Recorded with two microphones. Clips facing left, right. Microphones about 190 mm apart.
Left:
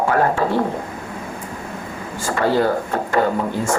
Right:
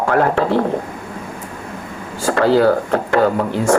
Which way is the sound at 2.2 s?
75° right (ahead or behind).